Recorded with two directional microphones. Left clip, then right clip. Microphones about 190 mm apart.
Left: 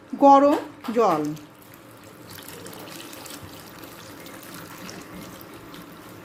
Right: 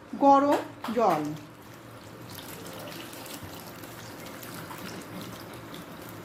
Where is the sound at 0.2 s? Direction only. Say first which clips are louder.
Left 6 dB; 35° left (ahead or behind).